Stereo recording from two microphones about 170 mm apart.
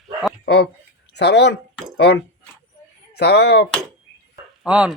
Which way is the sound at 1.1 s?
90° left.